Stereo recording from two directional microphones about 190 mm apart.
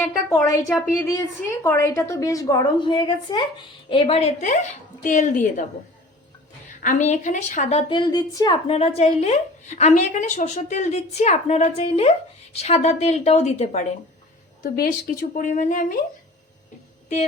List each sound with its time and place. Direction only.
0.3 s a woman's voice: 15° left (ahead or behind); by 5.6 s 45° left (ahead or behind)
6.8 s a woman's voice: 40° left (ahead or behind)
14.6 s a woman's voice: 50° left (ahead or behind)